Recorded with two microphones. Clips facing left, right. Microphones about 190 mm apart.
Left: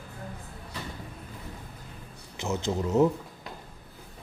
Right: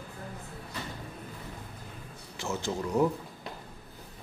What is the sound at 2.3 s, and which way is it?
Speech, 20° left (ahead or behind).